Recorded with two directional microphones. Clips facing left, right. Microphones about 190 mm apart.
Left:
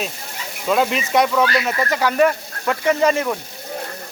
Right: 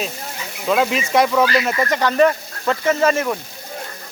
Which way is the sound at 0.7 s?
Centre (ahead or behind).